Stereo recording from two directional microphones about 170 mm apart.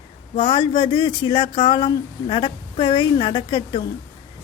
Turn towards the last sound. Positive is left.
turn(degrees=25)  # may be behind; listen again after turning